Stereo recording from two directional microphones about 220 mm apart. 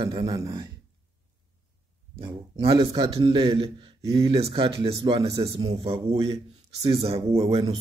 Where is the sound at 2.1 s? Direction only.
25° right (ahead or behind).